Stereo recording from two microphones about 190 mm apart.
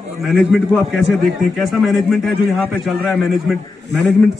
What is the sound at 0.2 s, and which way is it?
A man's voice, centre (ahead or behind).